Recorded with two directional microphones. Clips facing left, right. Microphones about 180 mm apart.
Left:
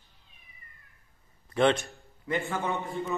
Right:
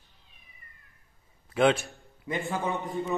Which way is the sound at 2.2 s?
15° right (ahead or behind).